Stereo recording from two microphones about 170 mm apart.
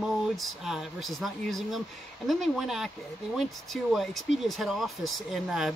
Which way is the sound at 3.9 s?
Centre (ahead or behind).